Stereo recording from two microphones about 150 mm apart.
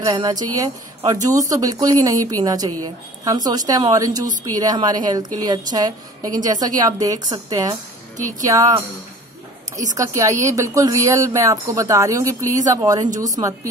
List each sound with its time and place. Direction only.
0.0 s speech: 25° right (ahead or behind)
8.2 s speech: 60° right (ahead or behind)
8.5 s speech: 25° right (ahead or behind)
9.9 s speech: 20° right (ahead or behind)